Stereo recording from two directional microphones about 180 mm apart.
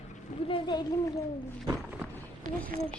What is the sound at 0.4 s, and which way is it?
Speech, 30° left (ahead or behind).